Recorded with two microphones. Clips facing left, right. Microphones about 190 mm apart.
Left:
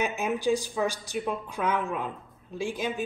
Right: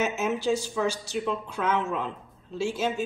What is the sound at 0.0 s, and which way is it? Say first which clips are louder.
Speech: right 1 dB; 15° left (ahead or behind).